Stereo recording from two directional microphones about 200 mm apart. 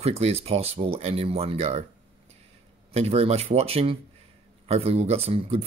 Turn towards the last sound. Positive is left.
turn(degrees=-30)  # may be behind; listen again after turning